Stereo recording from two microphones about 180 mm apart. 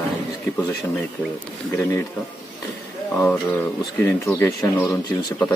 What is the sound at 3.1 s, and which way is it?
Speech, 5° left (ahead or behind).